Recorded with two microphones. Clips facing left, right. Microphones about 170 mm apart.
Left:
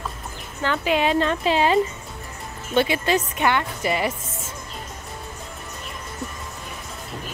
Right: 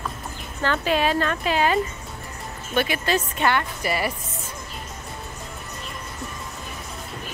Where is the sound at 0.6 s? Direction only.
15° left (ahead or behind).